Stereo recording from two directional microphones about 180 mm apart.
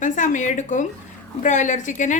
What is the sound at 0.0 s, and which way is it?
A woman's voice, 45° left (ahead or behind).